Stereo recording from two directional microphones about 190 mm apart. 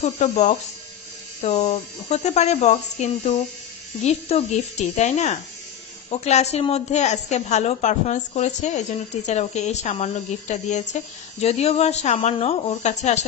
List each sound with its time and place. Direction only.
0.0 s a woman's voice: 40° left (ahead or behind)